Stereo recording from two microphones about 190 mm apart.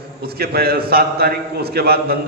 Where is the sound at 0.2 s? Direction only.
55° right (ahead or behind).